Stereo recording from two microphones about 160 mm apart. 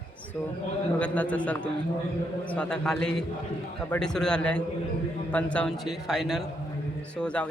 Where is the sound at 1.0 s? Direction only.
10° left (ahead or behind).